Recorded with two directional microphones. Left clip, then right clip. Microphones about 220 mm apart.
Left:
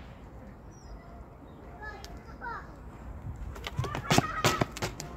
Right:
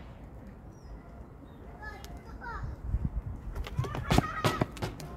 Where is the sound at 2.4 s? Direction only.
50° right (ahead or behind).